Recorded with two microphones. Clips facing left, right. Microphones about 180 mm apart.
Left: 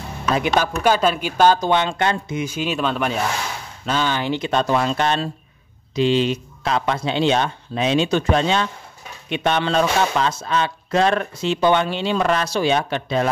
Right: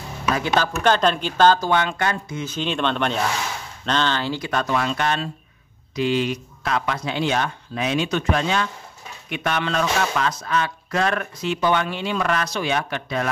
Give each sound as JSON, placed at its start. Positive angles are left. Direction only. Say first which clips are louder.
{"t": 0.3, "sound": "speech", "louder": "left 2 dB", "side_deg": 15}
{"t": 2.4, "sound": "speech", "louder": "even", "side_deg": 10}